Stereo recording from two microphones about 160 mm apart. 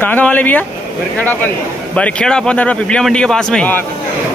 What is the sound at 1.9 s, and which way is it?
A man's voice, 5° left (ahead or behind).